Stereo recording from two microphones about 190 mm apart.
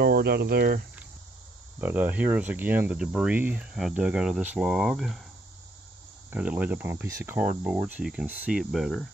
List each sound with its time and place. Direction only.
0.0 s speech: 55° right (ahead or behind)
1.8 s speech: 10° right (ahead or behind)
6.3 s speech: 5° right (ahead or behind)